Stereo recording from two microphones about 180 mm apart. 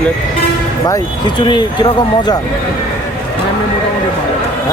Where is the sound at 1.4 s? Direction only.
25° left (ahead or behind).